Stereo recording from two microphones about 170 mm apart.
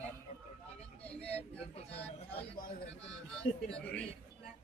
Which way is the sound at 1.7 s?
35° left (ahead or behind).